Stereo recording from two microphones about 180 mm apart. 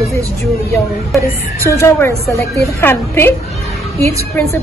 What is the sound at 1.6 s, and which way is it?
A woman's voice, 15° left (ahead or behind).